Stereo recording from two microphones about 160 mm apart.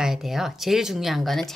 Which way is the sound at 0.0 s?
Centre (ahead or behind).